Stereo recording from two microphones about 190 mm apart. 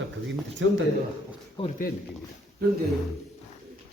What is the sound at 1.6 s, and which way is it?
Speech, 25° left (ahead or behind).